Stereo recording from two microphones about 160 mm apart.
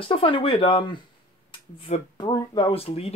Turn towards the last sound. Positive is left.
turn(degrees=40)  # may be behind; listen again after turning